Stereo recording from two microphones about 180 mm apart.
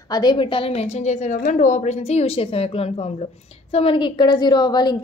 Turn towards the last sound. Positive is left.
turn(degrees=25)  # may be behind; listen again after turning